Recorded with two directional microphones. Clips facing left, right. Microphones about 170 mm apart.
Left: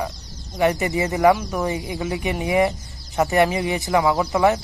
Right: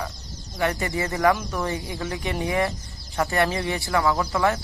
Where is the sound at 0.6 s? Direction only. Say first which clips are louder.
Left 5 dB; 20° left (ahead or behind).